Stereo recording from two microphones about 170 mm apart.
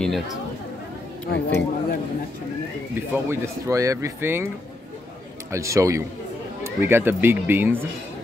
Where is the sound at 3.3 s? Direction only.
15° right (ahead or behind).